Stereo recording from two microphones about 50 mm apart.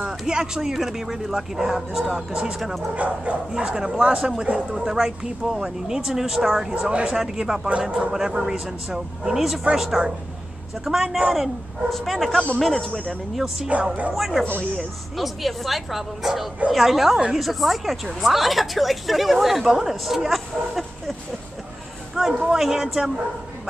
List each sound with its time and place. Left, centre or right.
0.3 s speech: centre
2.9 s speech: right
3.5 s speech: centre
10.0 s speech: right
10.9 s a woman's voice: centre
13.7 s speech: right
14.1 s a woman's voice: centre
22.2 s a sound: centre
22.5 s speech: centre